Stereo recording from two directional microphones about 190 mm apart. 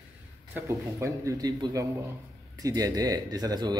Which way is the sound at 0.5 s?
15° right (ahead or behind).